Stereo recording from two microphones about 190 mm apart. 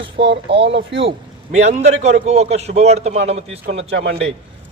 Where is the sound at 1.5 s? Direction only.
35° right (ahead or behind).